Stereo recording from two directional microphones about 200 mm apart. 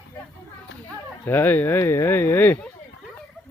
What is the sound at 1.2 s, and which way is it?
Speech, 10° left (ahead or behind).